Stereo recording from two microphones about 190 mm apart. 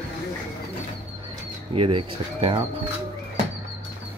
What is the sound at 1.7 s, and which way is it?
Speech, 30° right (ahead or behind).